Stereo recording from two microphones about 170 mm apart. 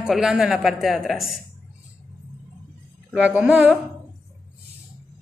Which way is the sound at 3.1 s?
10° right (ahead or behind).